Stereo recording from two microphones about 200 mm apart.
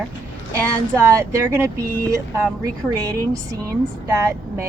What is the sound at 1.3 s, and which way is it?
Speech, 15° right (ahead or behind).